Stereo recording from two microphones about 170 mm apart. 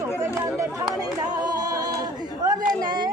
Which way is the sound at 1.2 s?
25° right (ahead or behind).